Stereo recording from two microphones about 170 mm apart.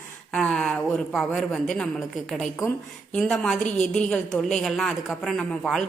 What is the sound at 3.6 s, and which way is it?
Speech, 45° left (ahead or behind).